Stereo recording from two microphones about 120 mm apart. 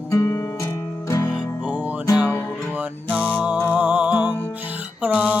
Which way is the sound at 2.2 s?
15° left (ahead or behind).